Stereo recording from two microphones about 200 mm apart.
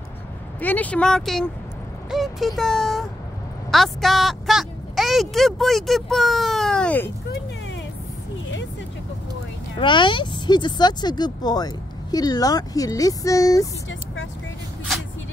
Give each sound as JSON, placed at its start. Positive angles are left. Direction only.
{"t": 0.6, "sound": "a woman's voice", "side_deg": 10}
{"t": 9.8, "sound": "speech", "side_deg": 25}